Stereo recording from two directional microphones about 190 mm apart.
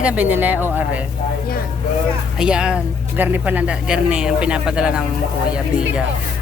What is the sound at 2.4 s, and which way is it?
Speech, 5° right (ahead or behind).